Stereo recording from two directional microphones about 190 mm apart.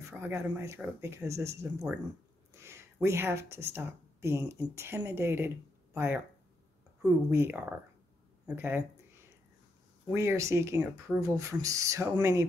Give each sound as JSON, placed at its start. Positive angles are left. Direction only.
{"t": 0.1, "sound": "speech", "side_deg": -10}
{"t": 10.1, "sound": "speech", "side_deg": -15}